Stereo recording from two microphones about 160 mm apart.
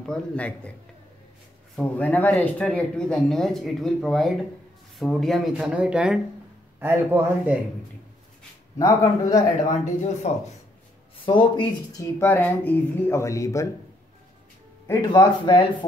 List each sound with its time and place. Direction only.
0.0 s speech: 5° left (ahead or behind)
1.8 s a man's voice: 10° left (ahead or behind); by 7.5 s 15° right (ahead or behind)
8.7 s speech: 20° left (ahead or behind)
9.7 s speech: 50° left (ahead or behind)
11.2 s speech: 30° left (ahead or behind)
12.2 s speech: 10° left (ahead or behind)
14.9 s speech: 25° left (ahead or behind)